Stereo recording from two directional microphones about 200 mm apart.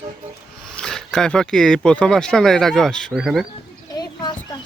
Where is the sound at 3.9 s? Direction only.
20° left (ahead or behind).